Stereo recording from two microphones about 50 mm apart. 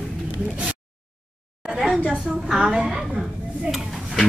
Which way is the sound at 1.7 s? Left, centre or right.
Centre.